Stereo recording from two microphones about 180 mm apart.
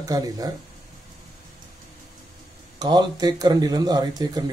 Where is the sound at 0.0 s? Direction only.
20° right (ahead or behind).